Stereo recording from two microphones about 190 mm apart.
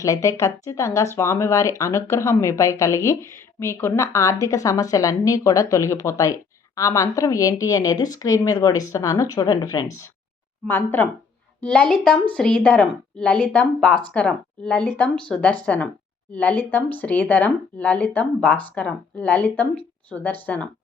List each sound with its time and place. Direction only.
0.0 s a woman's voice: 15° left (ahead or behind)